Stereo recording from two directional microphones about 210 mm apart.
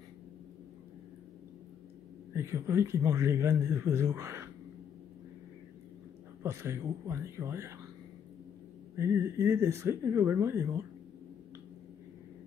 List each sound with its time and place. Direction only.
2.3 s speech: 10° right (ahead or behind)
6.4 s speech: 10° right (ahead or behind)
8.9 s speech: 10° right (ahead or behind)